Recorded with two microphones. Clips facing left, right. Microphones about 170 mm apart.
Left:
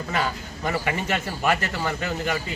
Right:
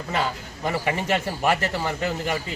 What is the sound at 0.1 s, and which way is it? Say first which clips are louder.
A man's voice: right 2 dB; 30° right (ahead or behind).